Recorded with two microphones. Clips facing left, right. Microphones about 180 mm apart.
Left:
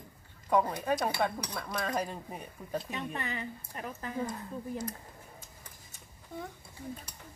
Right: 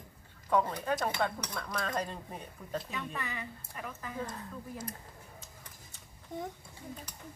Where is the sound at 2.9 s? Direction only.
30° left (ahead or behind).